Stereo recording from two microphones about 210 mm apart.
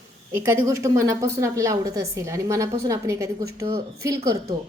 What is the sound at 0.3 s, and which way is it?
A woman's voice, 10° right (ahead or behind).